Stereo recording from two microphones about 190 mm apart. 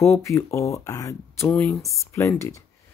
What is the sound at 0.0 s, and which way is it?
Speech, 15° left (ahead or behind).